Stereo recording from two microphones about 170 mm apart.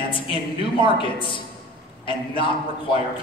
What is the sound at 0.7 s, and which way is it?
A man's voice, 30° left (ahead or behind).